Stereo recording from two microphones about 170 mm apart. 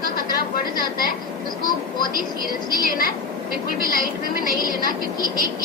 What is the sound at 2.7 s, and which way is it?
Speech, 60° left (ahead or behind).